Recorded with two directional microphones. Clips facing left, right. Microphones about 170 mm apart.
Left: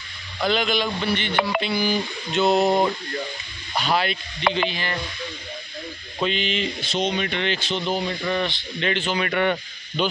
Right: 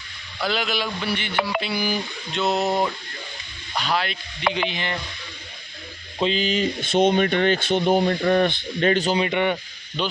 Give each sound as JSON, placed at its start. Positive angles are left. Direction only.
{"t": 0.4, "sound": "speech", "side_deg": -5}
{"t": 1.0, "sound": "telephone", "side_deg": -10}
{"t": 2.3, "sound": "speech", "side_deg": 0}
{"t": 4.6, "sound": "speech", "side_deg": -20}
{"t": 6.1, "sound": "speech", "side_deg": -30}
{"t": 6.8, "sound": "speech", "side_deg": -55}
{"t": 9.2, "sound": "telephone", "side_deg": -15}
{"t": 10.0, "sound": "speech", "side_deg": 0}